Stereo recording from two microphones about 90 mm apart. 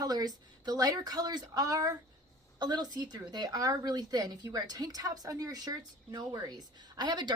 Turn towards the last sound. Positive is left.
turn(degrees=-50)  # may be behind; listen again after turning